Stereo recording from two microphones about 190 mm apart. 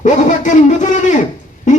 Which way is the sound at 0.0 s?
40° left (ahead or behind).